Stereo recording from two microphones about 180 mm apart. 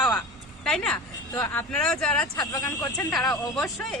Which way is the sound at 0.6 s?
5° left (ahead or behind).